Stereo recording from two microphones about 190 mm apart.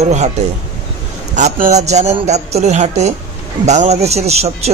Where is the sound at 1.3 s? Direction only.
35° right (ahead or behind).